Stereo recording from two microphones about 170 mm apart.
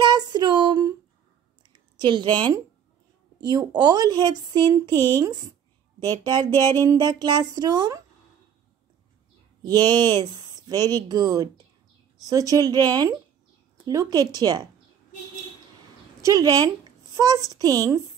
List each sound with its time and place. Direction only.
0.0 s a sound: 25° right (ahead or behind)
1.7 s a woman's voice: 25° right (ahead or behind)
9.6 s speech: 25° right (ahead or behind)
16.2 s speech: 20° right (ahead or behind)